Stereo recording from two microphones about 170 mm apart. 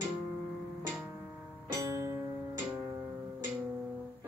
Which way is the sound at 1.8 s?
15° right (ahead or behind).